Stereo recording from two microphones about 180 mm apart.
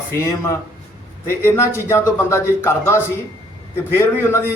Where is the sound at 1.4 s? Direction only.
15° left (ahead or behind).